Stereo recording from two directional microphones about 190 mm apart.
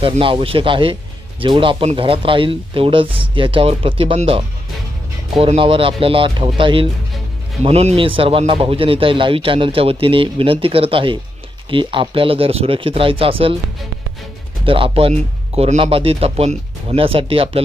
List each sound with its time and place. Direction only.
0.0 s speech: 30° right (ahead or behind)
14.7 s speech: 30° right (ahead or behind)